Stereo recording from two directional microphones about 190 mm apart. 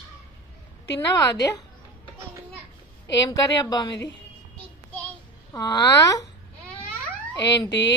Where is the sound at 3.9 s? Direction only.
65° left (ahead or behind).